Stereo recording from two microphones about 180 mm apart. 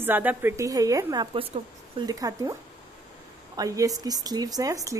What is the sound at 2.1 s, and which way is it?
Speech, 20° right (ahead or behind).